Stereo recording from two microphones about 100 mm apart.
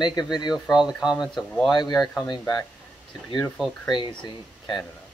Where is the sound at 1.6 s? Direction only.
45° left (ahead or behind).